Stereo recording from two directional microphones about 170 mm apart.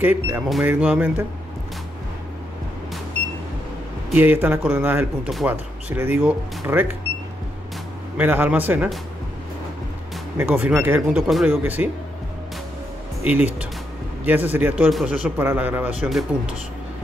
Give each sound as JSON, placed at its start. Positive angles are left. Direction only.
{"t": 0.0, "sound": "speech", "side_deg": -10}
{"t": 4.1, "sound": "speech", "side_deg": -10}
{"t": 8.2, "sound": "speech", "side_deg": -10}
{"t": 10.3, "sound": "speech", "side_deg": -10}
{"t": 13.3, "sound": "speech", "side_deg": -10}